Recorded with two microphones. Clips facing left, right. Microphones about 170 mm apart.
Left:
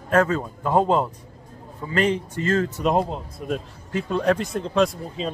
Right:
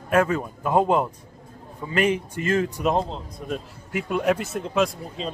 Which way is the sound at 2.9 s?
10° left (ahead or behind).